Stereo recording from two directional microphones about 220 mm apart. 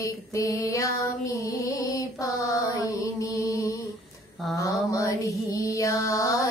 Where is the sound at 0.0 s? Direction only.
15° left (ahead or behind).